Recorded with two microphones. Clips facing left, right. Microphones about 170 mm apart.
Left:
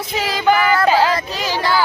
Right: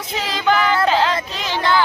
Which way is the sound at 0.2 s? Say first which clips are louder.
Left 2 dB; 10° left (ahead or behind).